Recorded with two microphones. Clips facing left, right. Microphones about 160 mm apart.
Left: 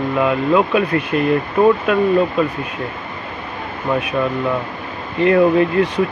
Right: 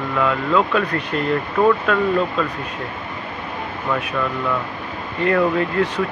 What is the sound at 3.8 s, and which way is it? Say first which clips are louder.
Speech: left 4 dB; 20° left (ahead or behind).